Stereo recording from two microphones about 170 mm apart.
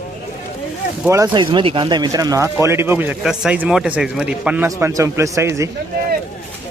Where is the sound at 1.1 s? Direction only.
20° right (ahead or behind).